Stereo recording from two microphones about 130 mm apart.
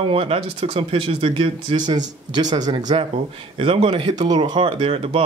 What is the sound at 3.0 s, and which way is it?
Speech, 50° right (ahead or behind).